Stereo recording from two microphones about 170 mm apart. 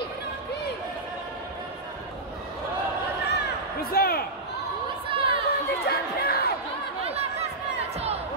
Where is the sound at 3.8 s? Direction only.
60° left (ahead or behind).